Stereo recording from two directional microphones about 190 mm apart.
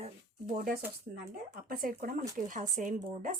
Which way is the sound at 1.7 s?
50° right (ahead or behind).